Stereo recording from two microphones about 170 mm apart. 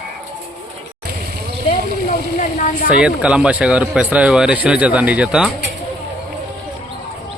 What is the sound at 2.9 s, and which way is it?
Speech, 5° right (ahead or behind).